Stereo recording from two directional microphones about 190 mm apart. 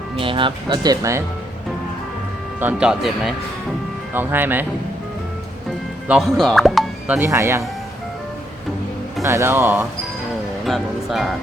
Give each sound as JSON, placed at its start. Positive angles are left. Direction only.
{"t": 0.2, "sound": "speech", "side_deg": -25}
{"t": 2.6, "sound": "speech", "side_deg": -10}
{"t": 6.1, "sound": "speech", "side_deg": 0}
{"t": 9.2, "sound": "speech", "side_deg": -15}